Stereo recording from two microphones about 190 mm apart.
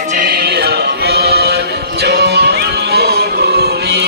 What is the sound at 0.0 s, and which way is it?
Music, 45° right (ahead or behind).